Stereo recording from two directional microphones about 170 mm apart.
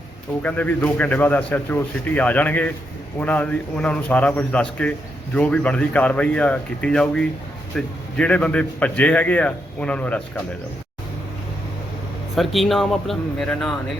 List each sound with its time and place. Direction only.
0.4 s speech: 10° left (ahead or behind)
12.4 s speech: centre (ahead or behind)